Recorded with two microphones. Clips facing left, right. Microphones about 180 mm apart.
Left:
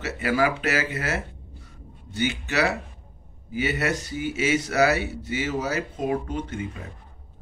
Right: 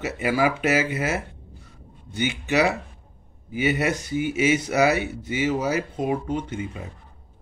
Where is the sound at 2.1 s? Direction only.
15° right (ahead or behind).